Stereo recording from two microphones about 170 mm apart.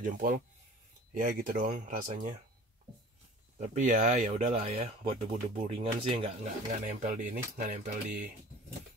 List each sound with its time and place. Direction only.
0.0 s speech: 55° right (ahead or behind)
3.5 s speech: 45° right (ahead or behind)
6.4 s speech: 50° right (ahead or behind)